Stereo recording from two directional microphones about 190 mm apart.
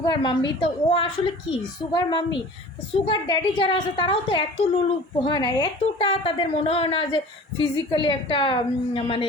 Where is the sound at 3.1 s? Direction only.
25° left (ahead or behind).